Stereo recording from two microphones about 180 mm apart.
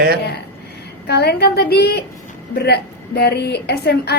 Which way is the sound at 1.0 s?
65° left (ahead or behind).